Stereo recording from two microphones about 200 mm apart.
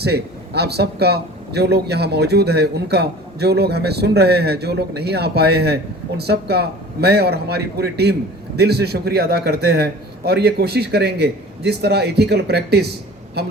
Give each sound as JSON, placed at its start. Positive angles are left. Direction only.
{"t": 0.0, "sound": "a man's voice", "side_deg": -55}